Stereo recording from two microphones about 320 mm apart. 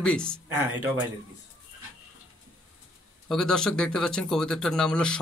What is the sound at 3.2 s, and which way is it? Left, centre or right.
Speech, centre.